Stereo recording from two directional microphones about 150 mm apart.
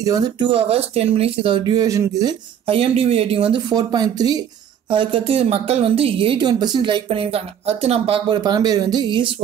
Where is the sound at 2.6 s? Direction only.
40° right (ahead or behind).